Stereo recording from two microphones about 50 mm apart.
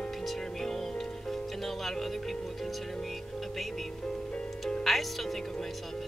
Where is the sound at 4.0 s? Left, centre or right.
Left.